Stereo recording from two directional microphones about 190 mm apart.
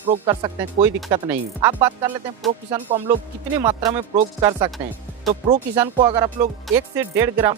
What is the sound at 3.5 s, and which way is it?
Speech, 15° right (ahead or behind).